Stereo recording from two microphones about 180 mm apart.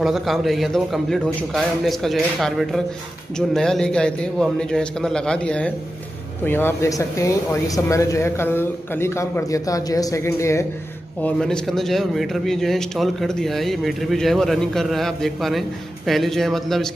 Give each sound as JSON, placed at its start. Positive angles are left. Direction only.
{"t": 0.0, "sound": "a man's voice", "side_deg": 0}
{"t": 11.2, "sound": "a man's voice", "side_deg": 5}